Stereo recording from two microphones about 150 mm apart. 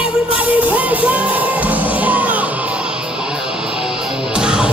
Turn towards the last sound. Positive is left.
turn(degrees=-5)  # may be behind; listen again after turning